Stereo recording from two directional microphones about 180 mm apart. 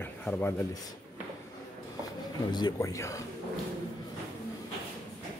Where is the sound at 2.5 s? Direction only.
20° left (ahead or behind).